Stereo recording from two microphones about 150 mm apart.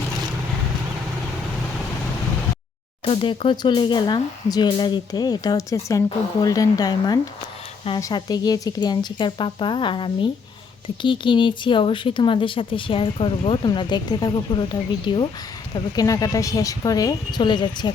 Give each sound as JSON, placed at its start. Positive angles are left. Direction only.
{"t": 3.0, "sound": "speech", "side_deg": 35}